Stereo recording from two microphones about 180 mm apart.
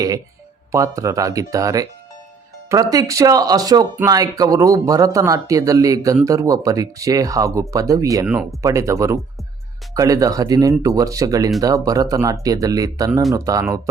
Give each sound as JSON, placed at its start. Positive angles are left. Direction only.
{"t": 0.7, "sound": "speech", "side_deg": -15}